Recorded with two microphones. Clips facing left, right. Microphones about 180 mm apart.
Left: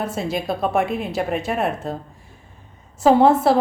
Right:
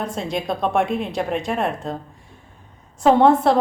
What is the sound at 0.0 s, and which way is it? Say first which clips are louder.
A woman's voice: left 1 dB; 5° left (ahead or behind).